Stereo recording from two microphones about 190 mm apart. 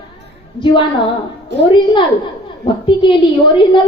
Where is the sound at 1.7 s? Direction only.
25° left (ahead or behind).